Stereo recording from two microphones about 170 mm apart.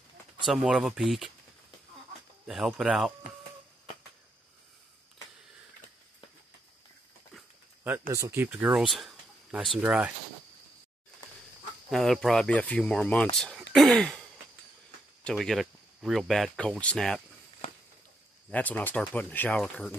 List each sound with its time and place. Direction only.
0.5 s speech: centre (ahead or behind)
2.4 s speech: centre (ahead or behind)
8.1 s speech: 15° right (ahead or behind)
8.5 s speech: 5° right (ahead or behind)
11.9 s speech: centre (ahead or behind)
15.2 s speech: centre (ahead or behind)
18.5 s speech: 10° left (ahead or behind)